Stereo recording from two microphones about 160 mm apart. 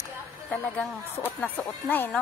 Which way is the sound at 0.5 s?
10° left (ahead or behind).